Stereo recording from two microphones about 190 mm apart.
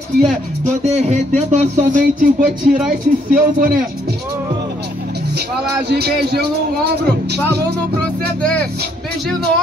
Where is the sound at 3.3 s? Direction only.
50° right (ahead or behind).